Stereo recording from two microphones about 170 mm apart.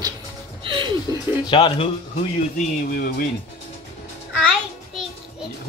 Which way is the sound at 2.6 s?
60° left (ahead or behind).